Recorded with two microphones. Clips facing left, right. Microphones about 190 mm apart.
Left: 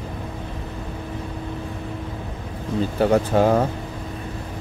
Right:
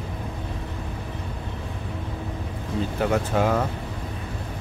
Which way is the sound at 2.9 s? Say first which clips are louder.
Left 6 dB; 35° left (ahead or behind).